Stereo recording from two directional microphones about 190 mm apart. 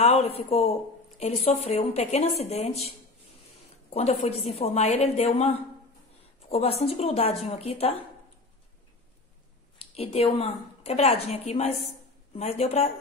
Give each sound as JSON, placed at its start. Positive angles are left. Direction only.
{"t": 0.0, "sound": "speech", "side_deg": 35}
{"t": 3.9, "sound": "speech", "side_deg": 35}
{"t": 6.5, "sound": "speech", "side_deg": 35}
{"t": 9.8, "sound": "a woman's voice", "side_deg": 30}